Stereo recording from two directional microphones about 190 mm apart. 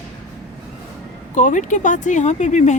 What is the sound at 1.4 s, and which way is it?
Speech, 40° left (ahead or behind).